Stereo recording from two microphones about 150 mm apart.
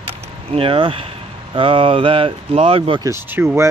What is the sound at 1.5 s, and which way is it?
Speech, 35° right (ahead or behind).